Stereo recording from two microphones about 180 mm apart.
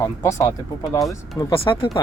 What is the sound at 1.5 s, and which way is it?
Speech, 30° left (ahead or behind).